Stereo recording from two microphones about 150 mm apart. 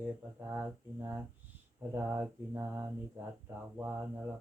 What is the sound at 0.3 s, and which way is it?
Mantra, 15° right (ahead or behind).